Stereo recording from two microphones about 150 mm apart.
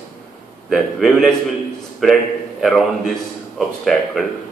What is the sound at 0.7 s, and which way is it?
Speech, centre (ahead or behind).